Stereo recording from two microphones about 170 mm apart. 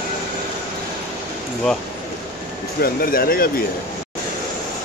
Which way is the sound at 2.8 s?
60° left (ahead or behind).